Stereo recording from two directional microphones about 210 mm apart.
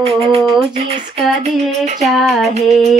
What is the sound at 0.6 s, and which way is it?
Speech, 30° right (ahead or behind).